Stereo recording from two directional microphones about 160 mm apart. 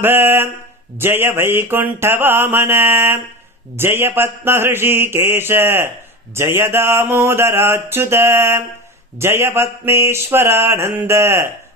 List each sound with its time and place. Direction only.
0.0 s mantra: 15° right (ahead or behind)